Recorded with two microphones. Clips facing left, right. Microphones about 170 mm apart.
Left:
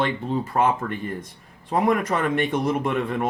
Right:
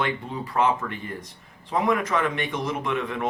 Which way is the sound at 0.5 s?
50° left (ahead or behind).